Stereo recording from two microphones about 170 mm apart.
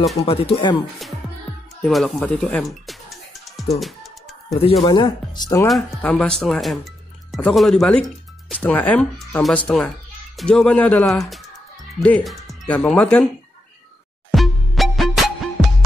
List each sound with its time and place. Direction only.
0.2 s speech: 35° left (ahead or behind)
1.8 s music: centre (ahead or behind)
4.6 s speech: 30° left (ahead or behind)
5.7 s speech: centre (ahead or behind)
14.3 s music: centre (ahead or behind)